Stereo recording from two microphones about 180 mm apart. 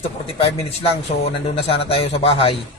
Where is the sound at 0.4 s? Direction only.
35° left (ahead or behind).